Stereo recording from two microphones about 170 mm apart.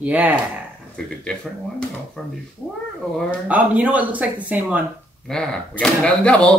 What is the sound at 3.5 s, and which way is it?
A woman's voice, 10° right (ahead or behind).